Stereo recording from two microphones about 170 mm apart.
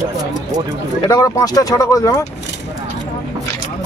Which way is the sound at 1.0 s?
20° left (ahead or behind).